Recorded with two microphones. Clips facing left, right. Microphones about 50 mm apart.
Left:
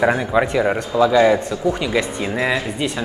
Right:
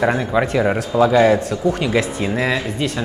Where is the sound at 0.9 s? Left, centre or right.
Centre.